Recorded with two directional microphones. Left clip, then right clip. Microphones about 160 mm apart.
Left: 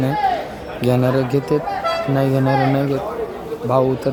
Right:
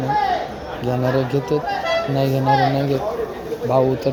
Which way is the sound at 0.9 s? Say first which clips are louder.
Left 2 dB; 25° left (ahead or behind).